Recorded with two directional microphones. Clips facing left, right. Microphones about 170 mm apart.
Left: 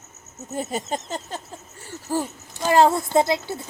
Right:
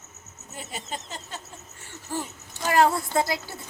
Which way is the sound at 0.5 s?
45° left (ahead or behind).